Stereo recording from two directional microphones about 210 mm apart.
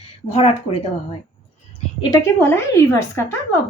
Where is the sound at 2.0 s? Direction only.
15° left (ahead or behind).